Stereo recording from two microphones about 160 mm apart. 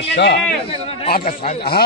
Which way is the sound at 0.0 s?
90° left.